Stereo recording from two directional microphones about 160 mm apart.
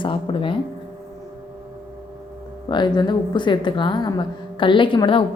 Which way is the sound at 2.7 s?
30° left (ahead or behind).